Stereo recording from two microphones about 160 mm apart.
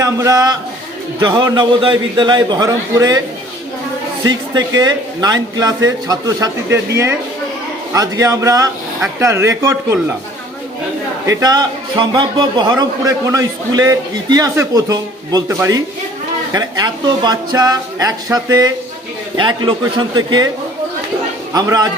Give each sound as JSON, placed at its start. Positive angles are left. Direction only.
{"t": 0.0, "sound": "a man's voice", "side_deg": -20}
{"t": 4.5, "sound": "a man's voice", "side_deg": -25}
{"t": 11.3, "sound": "a man's voice", "side_deg": -20}
{"t": 21.5, "sound": "a man's voice", "side_deg": -25}